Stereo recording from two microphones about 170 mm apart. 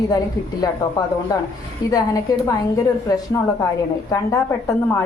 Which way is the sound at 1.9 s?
20° left (ahead or behind).